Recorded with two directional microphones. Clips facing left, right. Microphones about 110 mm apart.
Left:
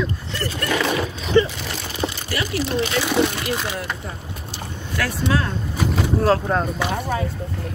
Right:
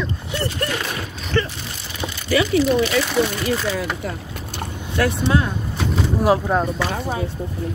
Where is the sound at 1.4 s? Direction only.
15° left (ahead or behind).